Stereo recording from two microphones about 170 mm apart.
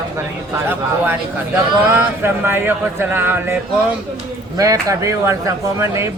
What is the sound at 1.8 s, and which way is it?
Speech, 10° right (ahead or behind).